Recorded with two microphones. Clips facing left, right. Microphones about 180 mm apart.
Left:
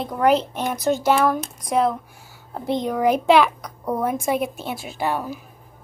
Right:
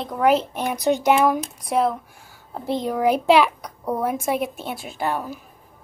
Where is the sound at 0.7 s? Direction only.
15° right (ahead or behind).